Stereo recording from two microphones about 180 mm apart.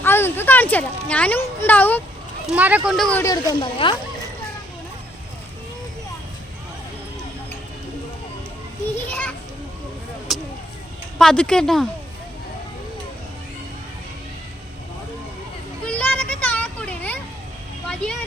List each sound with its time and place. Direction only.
0.0 s speech: 10° left (ahead or behind)
2.5 s speech: 10° right (ahead or behind)
3.2 s speech: 20° left (ahead or behind)
10.3 s vehicle: centre (ahead or behind)
11.2 s speech: 5° left (ahead or behind)
15.9 s a sound: 5° left (ahead or behind)
17.8 s vehicle: 5° left (ahead or behind)